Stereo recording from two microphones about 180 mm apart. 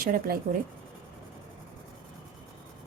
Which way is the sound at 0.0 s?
55° right (ahead or behind).